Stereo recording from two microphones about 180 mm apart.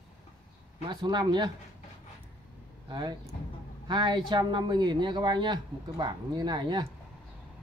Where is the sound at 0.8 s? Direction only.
25° right (ahead or behind).